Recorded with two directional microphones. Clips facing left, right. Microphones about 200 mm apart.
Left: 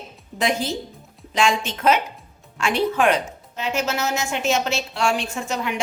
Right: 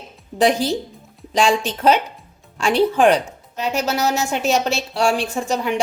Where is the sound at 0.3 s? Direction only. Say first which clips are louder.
Right 6 dB; 35° right (ahead or behind).